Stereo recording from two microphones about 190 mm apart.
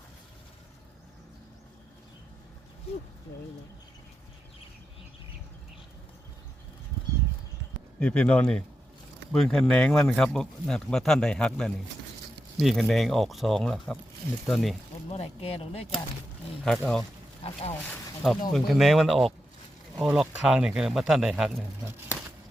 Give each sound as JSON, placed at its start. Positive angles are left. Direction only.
{"t": 7.9, "sound": "speech", "side_deg": 5}
{"t": 15.1, "sound": "speech", "side_deg": 30}
{"t": 16.6, "sound": "speech", "side_deg": 0}
{"t": 17.4, "sound": "speech", "side_deg": 35}
{"t": 18.5, "sound": "speech", "side_deg": 0}